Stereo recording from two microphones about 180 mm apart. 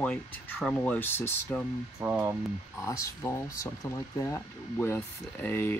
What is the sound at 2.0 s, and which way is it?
Speech, 15° right (ahead or behind).